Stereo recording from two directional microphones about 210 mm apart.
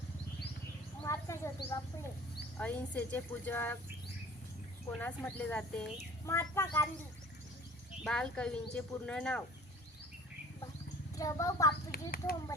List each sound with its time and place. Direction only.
1.0 s a sound: 15° left (ahead or behind)
2.6 s a woman's voice: 5° left (ahead or behind)
4.9 s a woman's voice: 10° left (ahead or behind)
8.0 s speech: 5° left (ahead or behind)
11.2 s a woman's voice: 15° left (ahead or behind)
11.9 s a child's voice: 45° left (ahead or behind)